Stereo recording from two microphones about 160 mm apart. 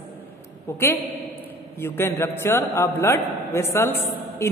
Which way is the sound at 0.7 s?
20° left (ahead or behind).